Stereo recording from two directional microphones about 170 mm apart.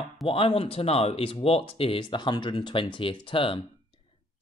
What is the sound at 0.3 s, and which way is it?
Speech, 35° left (ahead or behind).